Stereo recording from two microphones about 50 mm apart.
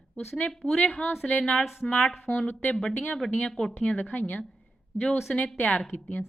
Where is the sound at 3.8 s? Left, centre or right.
Left.